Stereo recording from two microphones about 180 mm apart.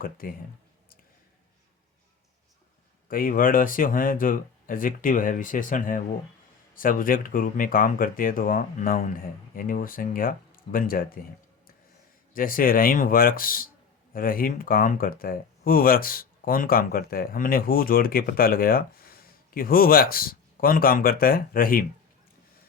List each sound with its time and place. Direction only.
0.0 s speech: 55° left (ahead or behind)
3.1 s speech: 50° left (ahead or behind)
12.3 s speech: 50° left (ahead or behind)